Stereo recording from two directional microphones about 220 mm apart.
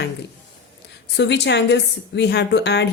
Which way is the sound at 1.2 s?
50° left (ahead or behind).